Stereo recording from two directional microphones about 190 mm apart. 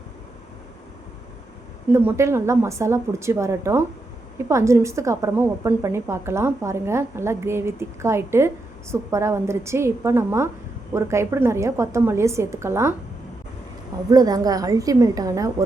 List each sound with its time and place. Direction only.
1.9 s a woman's voice: 15° right (ahead or behind)
14.1 s a woman's voice: 20° right (ahead or behind)